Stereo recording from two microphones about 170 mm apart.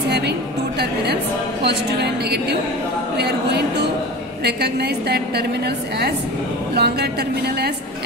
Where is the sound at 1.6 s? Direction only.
75° right (ahead or behind).